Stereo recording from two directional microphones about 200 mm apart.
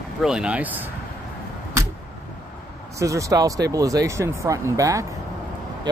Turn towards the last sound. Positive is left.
turn(degrees=-15)  # may be behind; listen again after turning